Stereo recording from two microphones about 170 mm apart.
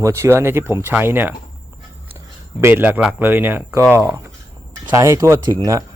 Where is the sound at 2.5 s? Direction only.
15° right (ahead or behind).